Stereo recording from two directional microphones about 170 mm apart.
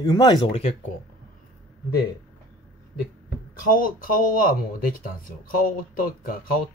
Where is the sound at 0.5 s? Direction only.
35° left (ahead or behind).